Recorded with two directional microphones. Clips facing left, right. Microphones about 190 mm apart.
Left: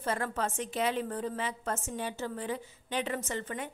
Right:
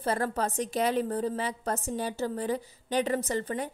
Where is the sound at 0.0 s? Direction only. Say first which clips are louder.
Right 4 dB; 35° right (ahead or behind).